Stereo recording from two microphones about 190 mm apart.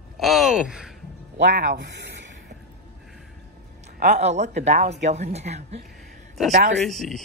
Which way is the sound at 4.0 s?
40° right (ahead or behind).